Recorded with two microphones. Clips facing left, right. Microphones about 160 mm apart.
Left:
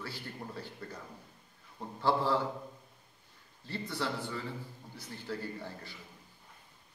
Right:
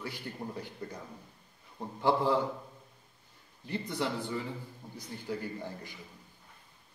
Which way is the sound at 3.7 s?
15° right (ahead or behind).